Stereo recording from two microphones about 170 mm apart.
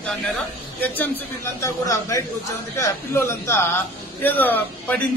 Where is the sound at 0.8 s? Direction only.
10° left (ahead or behind).